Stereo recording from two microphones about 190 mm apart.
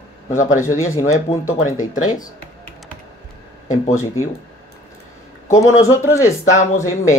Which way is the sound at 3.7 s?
15° left (ahead or behind).